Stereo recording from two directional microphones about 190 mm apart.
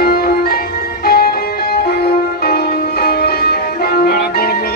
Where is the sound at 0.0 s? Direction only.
55° left (ahead or behind).